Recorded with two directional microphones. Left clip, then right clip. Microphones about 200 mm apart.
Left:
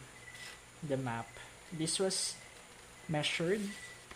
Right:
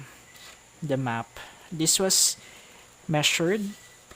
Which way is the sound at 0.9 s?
50° right (ahead or behind).